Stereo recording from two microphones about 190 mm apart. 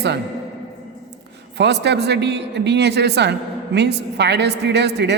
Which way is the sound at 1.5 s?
65° right (ahead or behind).